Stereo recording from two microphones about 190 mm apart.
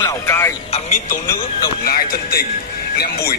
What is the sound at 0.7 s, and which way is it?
Music, 40° left (ahead or behind).